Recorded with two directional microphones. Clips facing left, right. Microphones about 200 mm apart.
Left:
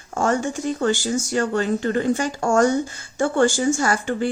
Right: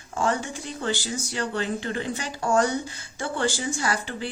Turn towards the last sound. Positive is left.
turn(degrees=45)  # may be behind; listen again after turning